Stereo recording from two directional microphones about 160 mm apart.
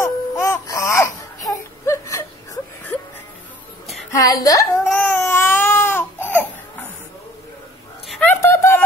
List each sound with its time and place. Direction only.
0.0 s baby cry: 20° left (ahead or behind)
1.5 s whimper: 20° left (ahead or behind)
4.1 s a woman's voice: 20° left (ahead or behind)
4.9 s baby cry: 15° left (ahead or behind)
8.1 s a sound: 10° left (ahead or behind)